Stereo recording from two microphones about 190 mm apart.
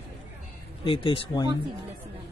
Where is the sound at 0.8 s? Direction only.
25° left (ahead or behind).